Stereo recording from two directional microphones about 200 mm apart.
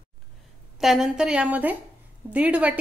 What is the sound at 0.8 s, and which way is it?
A woman's voice, centre (ahead or behind).